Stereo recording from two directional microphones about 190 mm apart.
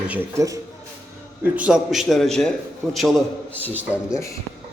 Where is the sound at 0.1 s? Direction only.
15° right (ahead or behind).